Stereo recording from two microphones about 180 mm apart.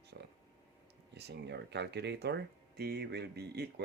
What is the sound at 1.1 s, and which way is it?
Speech, 70° right (ahead or behind).